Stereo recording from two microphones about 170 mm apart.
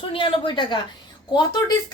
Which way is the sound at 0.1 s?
30° left (ahead or behind).